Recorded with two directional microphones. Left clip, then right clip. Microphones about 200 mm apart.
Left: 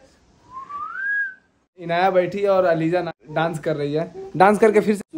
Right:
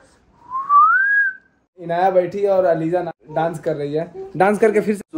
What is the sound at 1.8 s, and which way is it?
A man's voice, centre (ahead or behind).